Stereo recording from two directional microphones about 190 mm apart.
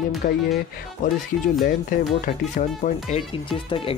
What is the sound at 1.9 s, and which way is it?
Speech, 45° left (ahead or behind).